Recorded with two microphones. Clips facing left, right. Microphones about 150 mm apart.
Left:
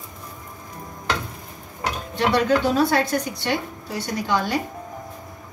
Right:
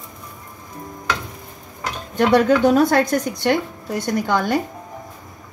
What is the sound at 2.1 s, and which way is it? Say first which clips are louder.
A woman's voice: right 5 dB; 50° right (ahead or behind).